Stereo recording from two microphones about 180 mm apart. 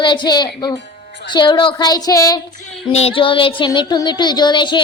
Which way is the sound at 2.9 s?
30° left (ahead or behind).